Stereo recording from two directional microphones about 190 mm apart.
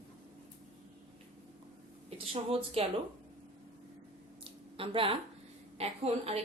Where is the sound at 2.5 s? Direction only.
30° right (ahead or behind).